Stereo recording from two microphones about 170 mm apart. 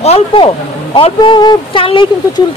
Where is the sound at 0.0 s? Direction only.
35° left (ahead or behind).